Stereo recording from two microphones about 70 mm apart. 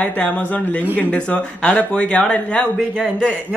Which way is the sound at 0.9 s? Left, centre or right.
Centre.